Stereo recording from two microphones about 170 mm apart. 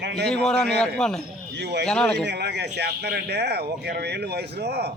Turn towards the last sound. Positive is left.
turn(degrees=-70)  # may be behind; listen again after turning